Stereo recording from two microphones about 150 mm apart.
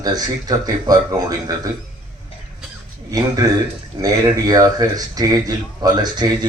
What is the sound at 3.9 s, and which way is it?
Speech, 30° right (ahead or behind).